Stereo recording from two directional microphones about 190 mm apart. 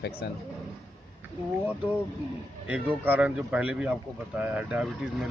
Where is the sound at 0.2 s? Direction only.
60° left (ahead or behind).